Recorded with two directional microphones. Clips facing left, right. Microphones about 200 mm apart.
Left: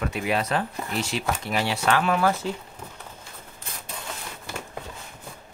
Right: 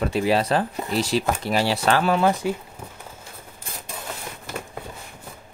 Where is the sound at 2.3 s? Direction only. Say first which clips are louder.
Right 3 dB; 15° right (ahead or behind).